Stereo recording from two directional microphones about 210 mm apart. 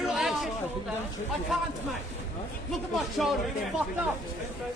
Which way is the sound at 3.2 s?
Centre (ahead or behind).